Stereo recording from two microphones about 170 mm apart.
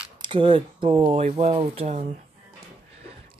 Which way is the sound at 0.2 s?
30° right (ahead or behind).